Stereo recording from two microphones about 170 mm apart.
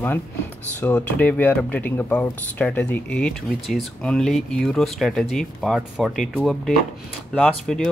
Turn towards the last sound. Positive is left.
turn(degrees=5)  # may be behind; listen again after turning